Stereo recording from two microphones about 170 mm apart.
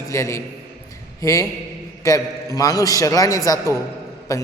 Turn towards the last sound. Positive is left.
turn(degrees=20)  # may be behind; listen again after turning